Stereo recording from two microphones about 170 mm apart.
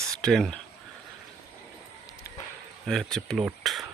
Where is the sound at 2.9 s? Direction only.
Centre (ahead or behind).